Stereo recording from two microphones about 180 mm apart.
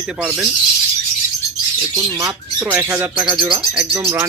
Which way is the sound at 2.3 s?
10° right (ahead or behind).